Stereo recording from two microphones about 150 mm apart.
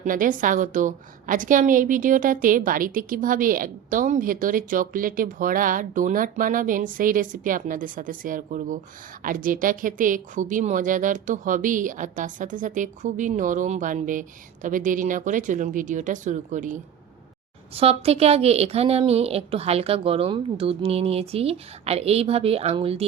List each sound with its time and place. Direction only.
0.0 s a woman's voice: 65° right (ahead or behind)
17.7 s a woman's voice: 40° right (ahead or behind)